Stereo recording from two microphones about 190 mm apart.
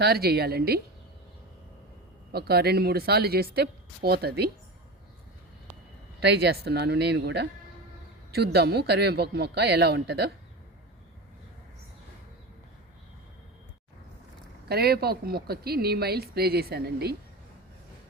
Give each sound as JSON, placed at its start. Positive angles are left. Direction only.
{"t": 0.0, "sound": "a woman's voice", "side_deg": -55}
{"t": 2.3, "sound": "a woman's voice", "side_deg": -55}
{"t": 6.2, "sound": "a woman's voice", "side_deg": -60}
{"t": 14.7, "sound": "a woman's voice", "side_deg": -55}